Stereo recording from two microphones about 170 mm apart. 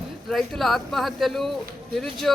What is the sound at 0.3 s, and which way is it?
Speech, centre (ahead or behind).